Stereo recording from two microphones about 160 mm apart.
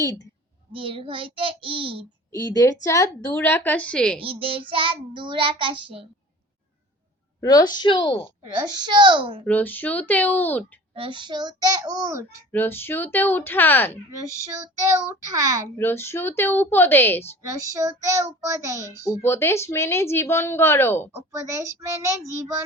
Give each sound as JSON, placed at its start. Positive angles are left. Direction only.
{"t": 0.7, "sound": "a child's voice", "side_deg": -35}
{"t": 2.3, "sound": "a woman's voice", "side_deg": 20}
{"t": 4.2, "sound": "a child's voice", "side_deg": -35}
{"t": 7.4, "sound": "a woman's voice", "side_deg": 25}
{"t": 8.5, "sound": "child singing", "side_deg": -25}
{"t": 9.5, "sound": "a woman's voice", "side_deg": 10}
{"t": 10.9, "sound": "child singing", "side_deg": -30}
{"t": 12.5, "sound": "a woman's voice", "side_deg": 15}
{"t": 14.5, "sound": "child singing", "side_deg": -20}
{"t": 15.8, "sound": "a woman's voice", "side_deg": 15}
{"t": 17.6, "sound": "child singing", "side_deg": -20}
{"t": 18.9, "sound": "a woman's voice", "side_deg": 15}
{"t": 21.3, "sound": "child singing", "side_deg": -20}